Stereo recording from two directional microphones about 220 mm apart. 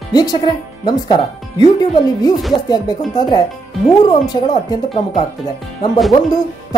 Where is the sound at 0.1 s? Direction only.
20° left (ahead or behind).